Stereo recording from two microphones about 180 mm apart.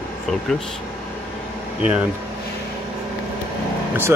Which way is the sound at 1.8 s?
5° right (ahead or behind).